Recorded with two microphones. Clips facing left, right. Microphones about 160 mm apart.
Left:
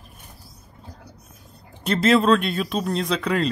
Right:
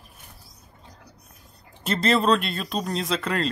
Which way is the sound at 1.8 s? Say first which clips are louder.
Left 4 dB; centre (ahead or behind).